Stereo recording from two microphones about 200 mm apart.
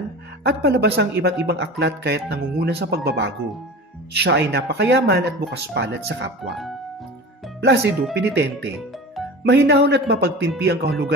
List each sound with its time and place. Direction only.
0.4 s speech: 55° right (ahead or behind)
6.4 s music: centre (ahead or behind)
7.6 s speech: 55° right (ahead or behind)